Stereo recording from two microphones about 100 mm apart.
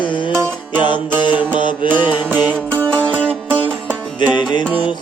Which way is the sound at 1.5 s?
55° left (ahead or behind).